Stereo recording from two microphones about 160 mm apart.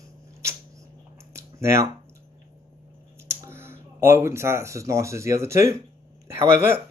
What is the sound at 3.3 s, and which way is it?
Speech, 15° right (ahead or behind).